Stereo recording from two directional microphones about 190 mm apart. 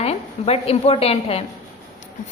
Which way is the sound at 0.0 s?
35° left (ahead or behind).